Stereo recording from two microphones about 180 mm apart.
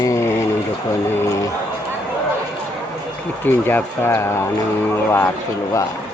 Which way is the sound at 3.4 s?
10° left (ahead or behind).